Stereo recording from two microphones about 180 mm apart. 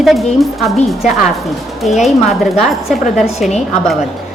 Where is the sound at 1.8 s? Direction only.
Centre (ahead or behind).